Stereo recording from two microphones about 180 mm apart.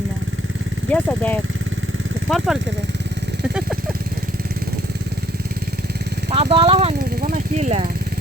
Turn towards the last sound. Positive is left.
turn(degrees=-40)  # may be behind; listen again after turning